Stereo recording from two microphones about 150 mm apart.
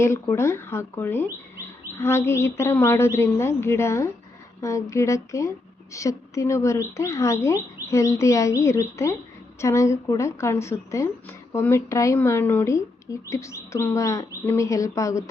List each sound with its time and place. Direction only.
0.0 s a woman's voice: 20° left (ahead or behind)